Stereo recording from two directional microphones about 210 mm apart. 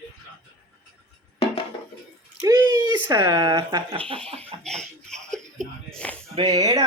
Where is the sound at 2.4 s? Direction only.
15° right (ahead or behind).